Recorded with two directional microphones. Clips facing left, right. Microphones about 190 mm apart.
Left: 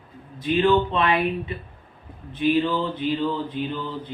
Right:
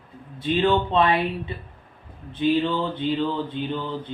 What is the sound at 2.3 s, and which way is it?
Speech, 30° right (ahead or behind).